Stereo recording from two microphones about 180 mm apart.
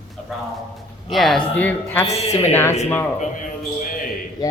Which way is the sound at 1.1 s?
Centre (ahead or behind).